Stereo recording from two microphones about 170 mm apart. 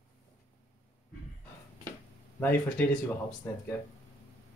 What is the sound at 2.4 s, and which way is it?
Speech, 5° left (ahead or behind).